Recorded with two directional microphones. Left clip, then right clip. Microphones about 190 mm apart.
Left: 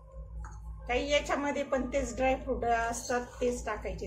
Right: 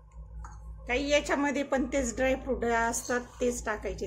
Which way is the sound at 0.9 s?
60° right (ahead or behind).